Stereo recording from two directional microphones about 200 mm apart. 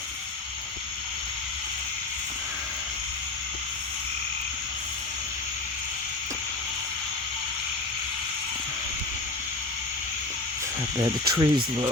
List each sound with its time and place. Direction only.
10.9 s speech: 20° right (ahead or behind)